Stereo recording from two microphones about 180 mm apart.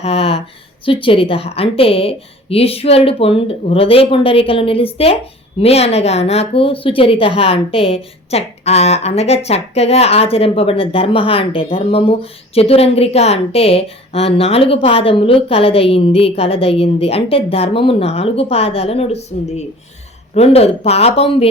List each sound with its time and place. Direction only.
0.0 s speech: 35° left (ahead or behind)
20.3 s speech: 35° left (ahead or behind)